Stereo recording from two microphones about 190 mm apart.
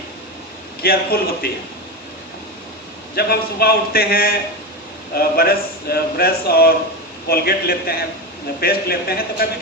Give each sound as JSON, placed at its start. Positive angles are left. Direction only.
{"t": 0.8, "sound": "a man's voice", "side_deg": 55}
{"t": 3.2, "sound": "a man's voice", "side_deg": 55}